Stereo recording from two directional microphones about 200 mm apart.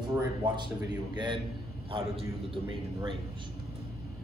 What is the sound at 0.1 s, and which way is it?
A man's voice, 15° right (ahead or behind).